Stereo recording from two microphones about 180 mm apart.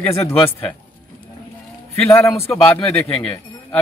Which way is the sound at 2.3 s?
15° left (ahead or behind).